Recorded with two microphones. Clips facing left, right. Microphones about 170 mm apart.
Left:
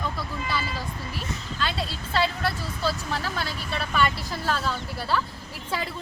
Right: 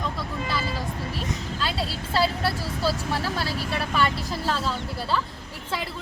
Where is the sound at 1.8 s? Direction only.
35° right (ahead or behind).